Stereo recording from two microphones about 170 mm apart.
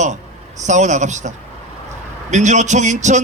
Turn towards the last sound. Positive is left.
turn(degrees=-45)  # may be behind; listen again after turning